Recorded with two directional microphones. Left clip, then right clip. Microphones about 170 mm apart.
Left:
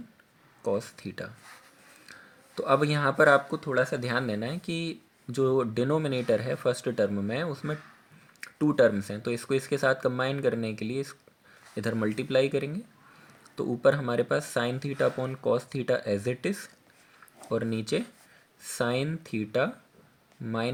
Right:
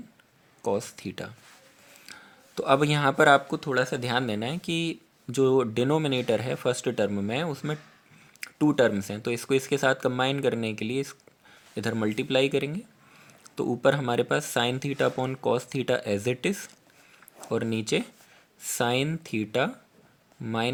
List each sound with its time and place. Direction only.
0.6 s speech: 35° right (ahead or behind)
2.6 s speech: 40° right (ahead or behind)